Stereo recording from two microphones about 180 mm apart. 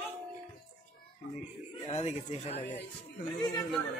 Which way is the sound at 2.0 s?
35° left (ahead or behind).